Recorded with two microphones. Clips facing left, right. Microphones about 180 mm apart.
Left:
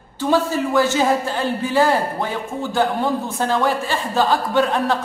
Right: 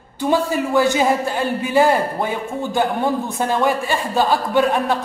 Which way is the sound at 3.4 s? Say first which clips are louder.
Right 1 dB; 15° right (ahead or behind).